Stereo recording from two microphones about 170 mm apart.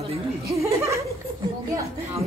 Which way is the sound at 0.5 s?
20° right (ahead or behind).